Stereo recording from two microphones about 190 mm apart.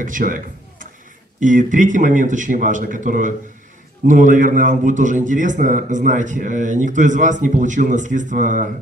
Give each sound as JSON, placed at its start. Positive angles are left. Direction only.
{"t": 0.0, "sound": "a man's voice", "side_deg": -45}